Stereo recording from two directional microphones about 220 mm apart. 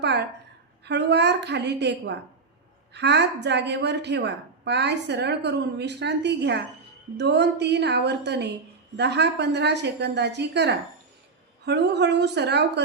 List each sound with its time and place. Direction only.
0.0 s a woman's voice: 50° right (ahead or behind)